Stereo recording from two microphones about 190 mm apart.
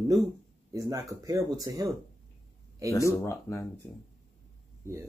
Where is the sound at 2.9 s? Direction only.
15° left (ahead or behind).